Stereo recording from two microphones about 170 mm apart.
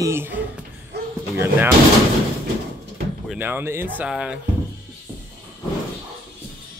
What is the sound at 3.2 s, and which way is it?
Speech, 10° right (ahead or behind).